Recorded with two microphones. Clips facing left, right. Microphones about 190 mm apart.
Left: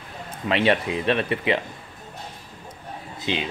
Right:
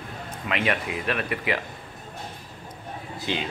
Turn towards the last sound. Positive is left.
turn(degrees=20)  # may be behind; listen again after turning